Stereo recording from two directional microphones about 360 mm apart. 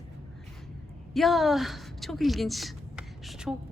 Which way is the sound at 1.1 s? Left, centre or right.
Centre.